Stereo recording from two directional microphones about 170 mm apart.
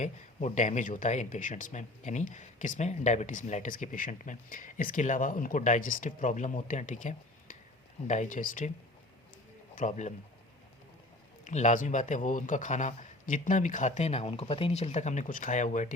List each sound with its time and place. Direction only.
0.0 s speech: 45° left (ahead or behind)
9.7 s speech: 45° left (ahead or behind)
11.4 s speech: 45° left (ahead or behind)